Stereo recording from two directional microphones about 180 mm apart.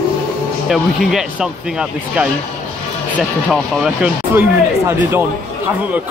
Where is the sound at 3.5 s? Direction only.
Centre (ahead or behind).